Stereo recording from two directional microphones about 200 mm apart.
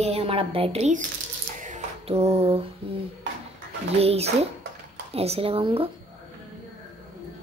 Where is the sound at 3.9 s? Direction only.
30° right (ahead or behind).